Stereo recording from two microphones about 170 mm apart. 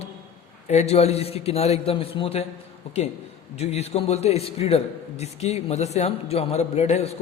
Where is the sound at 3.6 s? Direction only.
40° left (ahead or behind).